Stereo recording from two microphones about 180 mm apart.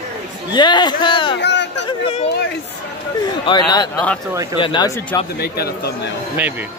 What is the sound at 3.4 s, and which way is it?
Speech, 25° left (ahead or behind).